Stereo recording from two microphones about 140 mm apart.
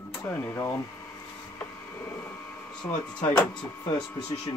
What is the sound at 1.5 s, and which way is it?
Printer, 15° left (ahead or behind).